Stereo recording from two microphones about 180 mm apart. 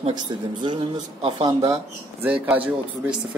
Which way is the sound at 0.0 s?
25° right (ahead or behind).